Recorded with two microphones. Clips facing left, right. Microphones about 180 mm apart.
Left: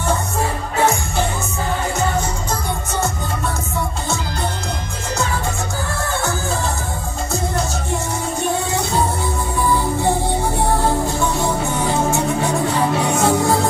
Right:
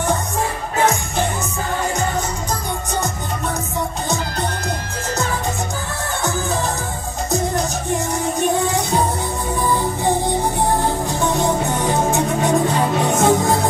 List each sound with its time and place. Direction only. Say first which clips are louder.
8.4 s music: right 2 dB; 15° right (ahead or behind)